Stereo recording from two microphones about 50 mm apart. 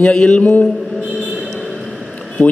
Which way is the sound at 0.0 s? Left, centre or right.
Centre.